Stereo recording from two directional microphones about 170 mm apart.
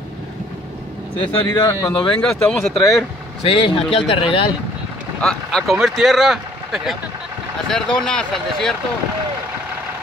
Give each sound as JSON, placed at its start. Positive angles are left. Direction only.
{"t": 1.2, "sound": "speech", "side_deg": 30}
{"t": 2.2, "sound": "speech", "side_deg": 0}
{"t": 2.8, "sound": "speech", "side_deg": 20}
{"t": 3.4, "sound": "speech", "side_deg": 35}
{"t": 5.2, "sound": "speech", "side_deg": 5}